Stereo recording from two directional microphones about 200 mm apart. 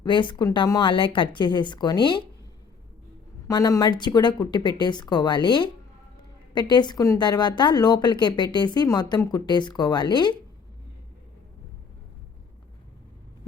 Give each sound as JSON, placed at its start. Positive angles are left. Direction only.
{"t": 0.0, "sound": "speech", "side_deg": 25}
{"t": 3.4, "sound": "speech", "side_deg": 15}